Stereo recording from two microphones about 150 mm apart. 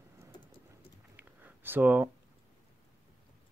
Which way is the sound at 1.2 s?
10° right (ahead or behind).